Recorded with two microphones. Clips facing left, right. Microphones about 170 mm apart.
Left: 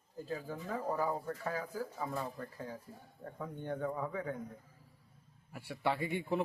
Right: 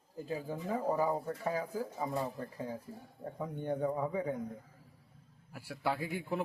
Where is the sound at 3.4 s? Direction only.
15° right (ahead or behind).